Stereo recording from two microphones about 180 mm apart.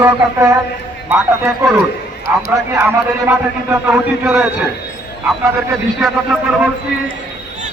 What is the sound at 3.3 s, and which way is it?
Speech, 15° right (ahead or behind).